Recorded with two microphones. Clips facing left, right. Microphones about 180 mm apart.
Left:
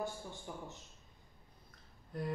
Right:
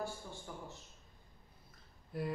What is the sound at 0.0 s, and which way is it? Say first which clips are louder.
Speech: left 1 dB; 20° left (ahead or behind).